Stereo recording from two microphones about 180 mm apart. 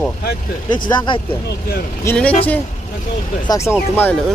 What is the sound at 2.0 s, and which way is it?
Speech, 10° left (ahead or behind).